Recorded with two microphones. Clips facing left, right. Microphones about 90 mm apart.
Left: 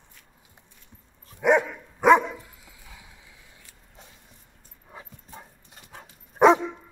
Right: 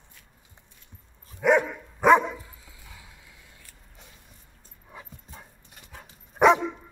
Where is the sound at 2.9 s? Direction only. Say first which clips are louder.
Even; 20° left (ahead or behind).